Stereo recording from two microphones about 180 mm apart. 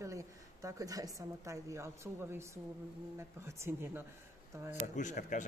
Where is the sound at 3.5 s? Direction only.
15° right (ahead or behind).